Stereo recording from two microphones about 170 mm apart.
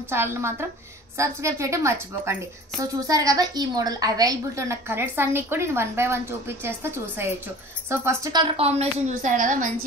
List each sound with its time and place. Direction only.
0.1 s a woman's voice: 15° right (ahead or behind)
8.5 s a woman's voice: 35° right (ahead or behind)